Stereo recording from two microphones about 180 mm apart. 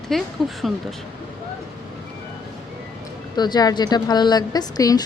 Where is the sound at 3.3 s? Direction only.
25° left (ahead or behind).